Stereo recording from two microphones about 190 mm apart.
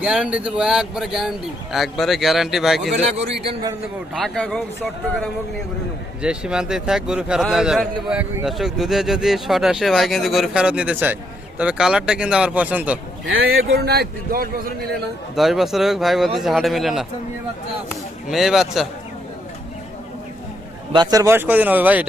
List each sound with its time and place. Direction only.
0.0 s a man's voice: 5° right (ahead or behind)
3.4 s a man's voice: 20° right (ahead or behind)
4.1 s a man's voice: 5° left (ahead or behind)
6.2 s a man's voice: 5° right (ahead or behind)
13.2 s a man's voice: 75° right (ahead or behind); by 14.7 s 50° right (ahead or behind)
15.4 s a man's voice: centre (ahead or behind)
20.9 s speech: 20° right (ahead or behind)